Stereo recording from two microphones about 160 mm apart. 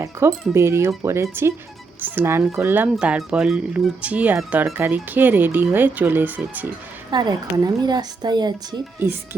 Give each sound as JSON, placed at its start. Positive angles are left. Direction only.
{"t": 0.0, "sound": "a woman's voice", "side_deg": -20}
{"t": 7.1, "sound": "a woman's voice", "side_deg": -25}